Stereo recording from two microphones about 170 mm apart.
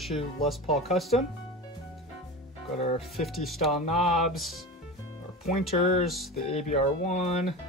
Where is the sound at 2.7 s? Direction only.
40° left (ahead or behind).